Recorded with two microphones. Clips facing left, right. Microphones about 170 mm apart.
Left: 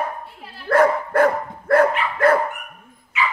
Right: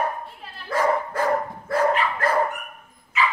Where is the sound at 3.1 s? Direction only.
40° right (ahead or behind).